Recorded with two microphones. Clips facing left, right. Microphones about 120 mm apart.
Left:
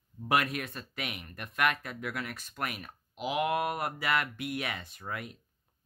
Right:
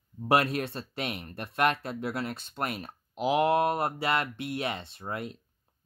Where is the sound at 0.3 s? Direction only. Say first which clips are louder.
Right 4 dB; 30° right (ahead or behind).